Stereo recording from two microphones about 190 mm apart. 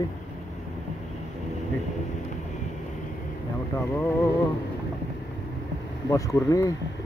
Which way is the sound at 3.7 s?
15° left (ahead or behind).